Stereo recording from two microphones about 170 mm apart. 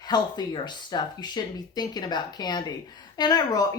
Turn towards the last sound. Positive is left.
turn(degrees=25)  # may be behind; listen again after turning